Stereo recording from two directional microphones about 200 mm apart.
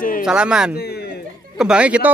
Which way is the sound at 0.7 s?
50° left (ahead or behind).